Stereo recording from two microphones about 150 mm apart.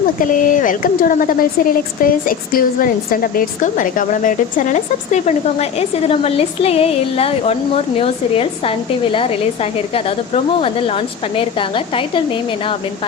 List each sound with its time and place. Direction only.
0.2 s a woman's voice: 60° left (ahead or behind); by 11.4 s 40° left (ahead or behind)